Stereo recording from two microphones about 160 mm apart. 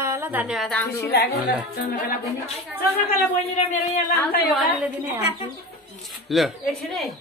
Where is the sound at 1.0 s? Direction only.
90° left.